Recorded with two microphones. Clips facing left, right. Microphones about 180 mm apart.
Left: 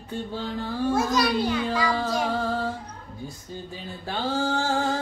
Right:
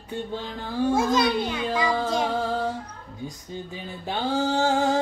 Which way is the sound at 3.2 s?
15° right (ahead or behind).